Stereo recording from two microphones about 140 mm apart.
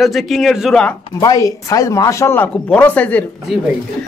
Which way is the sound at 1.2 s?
25° left (ahead or behind).